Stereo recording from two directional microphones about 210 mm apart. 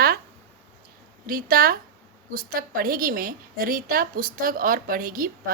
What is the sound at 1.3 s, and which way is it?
A woman's voice, 45° right (ahead or behind).